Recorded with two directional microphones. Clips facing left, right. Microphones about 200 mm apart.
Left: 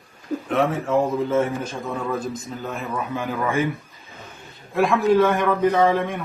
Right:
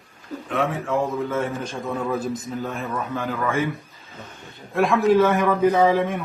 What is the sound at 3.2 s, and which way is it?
Speech, 15° left (ahead or behind).